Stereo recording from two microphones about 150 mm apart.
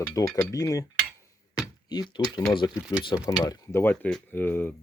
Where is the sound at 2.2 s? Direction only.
30° left (ahead or behind).